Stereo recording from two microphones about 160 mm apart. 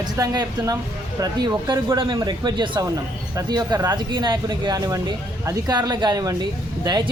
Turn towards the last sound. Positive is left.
turn(degrees=-25)  # may be behind; listen again after turning